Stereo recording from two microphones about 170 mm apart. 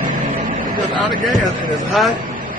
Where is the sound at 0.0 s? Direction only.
50° right (ahead or behind).